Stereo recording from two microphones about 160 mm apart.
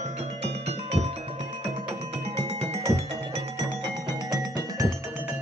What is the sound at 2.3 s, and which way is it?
Music, 40° right (ahead or behind).